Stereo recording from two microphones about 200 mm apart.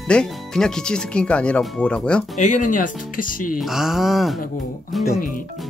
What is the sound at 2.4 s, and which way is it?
Speech, 40° left (ahead or behind).